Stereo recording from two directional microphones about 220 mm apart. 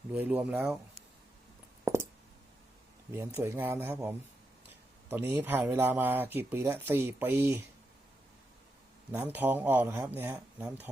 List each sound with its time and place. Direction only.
0.1 s speech: 5° right (ahead or behind)
1.8 s a sound: 15° right (ahead or behind)
3.1 s speech: 10° right (ahead or behind)
9.1 s speech: 10° right (ahead or behind)